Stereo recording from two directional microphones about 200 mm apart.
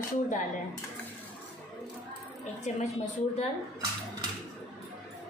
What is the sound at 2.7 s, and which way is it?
Speech, 35° left (ahead or behind).